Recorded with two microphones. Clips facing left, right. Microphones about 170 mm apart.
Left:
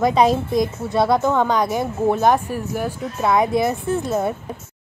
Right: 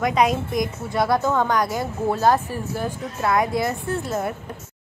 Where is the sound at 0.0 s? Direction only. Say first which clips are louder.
Left 4 dB; 30° left (ahead or behind).